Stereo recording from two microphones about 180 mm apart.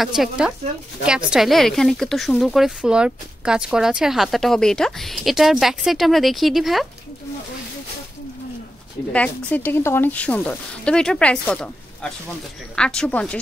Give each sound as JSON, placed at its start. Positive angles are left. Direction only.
{"t": 0.0, "sound": "speech", "side_deg": 0}
{"t": 9.1, "sound": "speech", "side_deg": 5}